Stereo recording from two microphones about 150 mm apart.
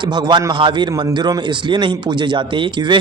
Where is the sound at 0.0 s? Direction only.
30° right (ahead or behind).